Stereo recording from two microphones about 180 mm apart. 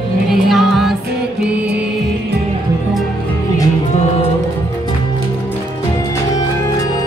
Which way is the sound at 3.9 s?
40° left (ahead or behind).